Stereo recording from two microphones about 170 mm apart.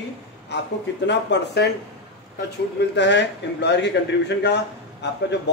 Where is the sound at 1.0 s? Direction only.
85° left.